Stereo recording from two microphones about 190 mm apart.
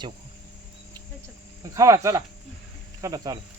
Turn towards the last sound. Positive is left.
turn(degrees=-20)  # may be behind; listen again after turning